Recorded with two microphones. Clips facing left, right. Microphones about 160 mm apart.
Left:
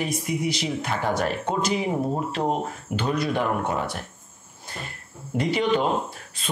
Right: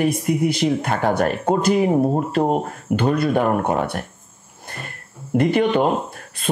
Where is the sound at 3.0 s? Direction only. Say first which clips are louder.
Right 6 dB; 55° right (ahead or behind).